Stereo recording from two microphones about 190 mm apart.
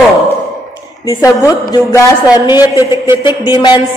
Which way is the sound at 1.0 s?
15° left (ahead or behind).